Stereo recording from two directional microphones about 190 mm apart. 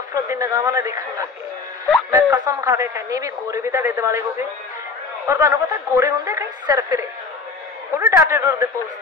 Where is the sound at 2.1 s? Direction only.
15° right (ahead or behind).